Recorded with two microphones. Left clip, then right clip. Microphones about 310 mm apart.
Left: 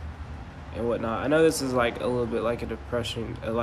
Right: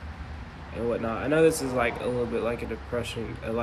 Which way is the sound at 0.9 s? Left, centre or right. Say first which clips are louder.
Left 2 dB; centre.